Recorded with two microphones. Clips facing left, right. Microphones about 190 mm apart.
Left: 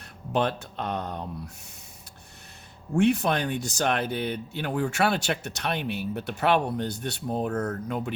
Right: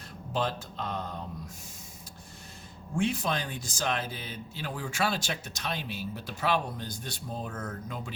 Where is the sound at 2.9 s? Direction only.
65° left (ahead or behind).